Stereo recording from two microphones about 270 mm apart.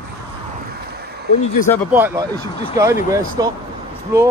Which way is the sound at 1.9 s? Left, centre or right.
Centre.